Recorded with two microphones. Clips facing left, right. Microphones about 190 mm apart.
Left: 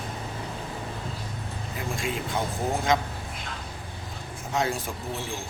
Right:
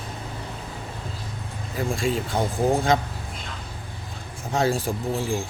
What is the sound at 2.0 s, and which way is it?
Speech, 35° right (ahead or behind).